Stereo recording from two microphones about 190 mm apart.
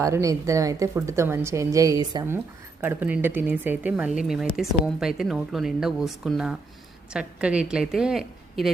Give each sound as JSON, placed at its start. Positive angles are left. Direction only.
{"t": 0.0, "sound": "a woman's voice", "side_deg": -15}